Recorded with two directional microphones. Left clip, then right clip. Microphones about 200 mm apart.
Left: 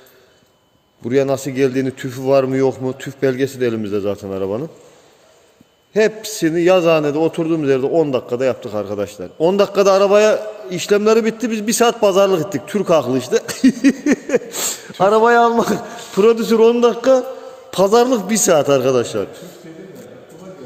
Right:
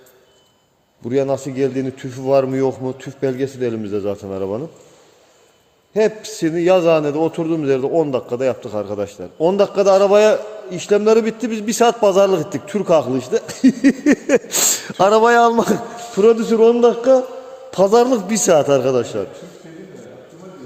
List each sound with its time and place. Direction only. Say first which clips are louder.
1.0 s a man's voice: left 2 dB; 10° left (ahead or behind)
5.9 s a man's voice: left 1 dB; 10° left (ahead or behind)
14.0 s speech: right 2 dB; 50° right (ahead or behind)
16.1 s a man's voice: even; 10° left (ahead or behind)